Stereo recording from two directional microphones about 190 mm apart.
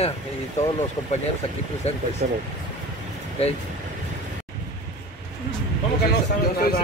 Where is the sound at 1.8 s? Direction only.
35° left (ahead or behind).